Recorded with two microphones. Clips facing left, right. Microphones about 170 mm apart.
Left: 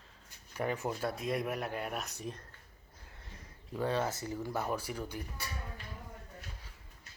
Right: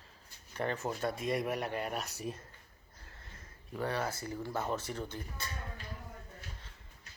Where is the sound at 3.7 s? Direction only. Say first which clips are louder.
Left 2 dB; 15° left (ahead or behind).